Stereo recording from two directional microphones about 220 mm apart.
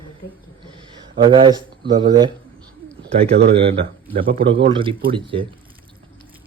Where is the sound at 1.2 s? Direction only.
20° right (ahead or behind).